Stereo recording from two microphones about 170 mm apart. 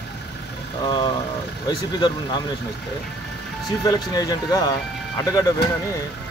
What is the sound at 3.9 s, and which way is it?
Speech, 20° left (ahead or behind).